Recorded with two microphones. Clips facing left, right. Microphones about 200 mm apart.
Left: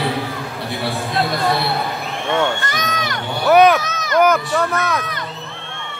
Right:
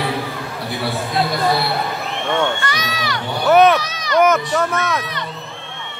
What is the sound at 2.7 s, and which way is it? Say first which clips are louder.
Speech: left 1 dB; 50° left (ahead or behind).